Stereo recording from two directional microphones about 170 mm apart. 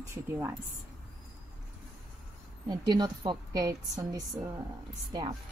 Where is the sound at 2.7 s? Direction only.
25° right (ahead or behind).